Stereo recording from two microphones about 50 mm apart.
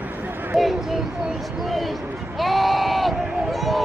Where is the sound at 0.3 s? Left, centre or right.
Right.